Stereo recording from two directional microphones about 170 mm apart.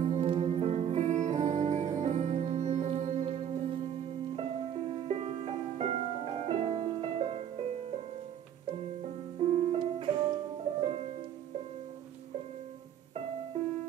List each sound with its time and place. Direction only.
0.0 s music: 35° right (ahead or behind)
9.5 s music: 40° right (ahead or behind)
9.8 s music: 30° right (ahead or behind)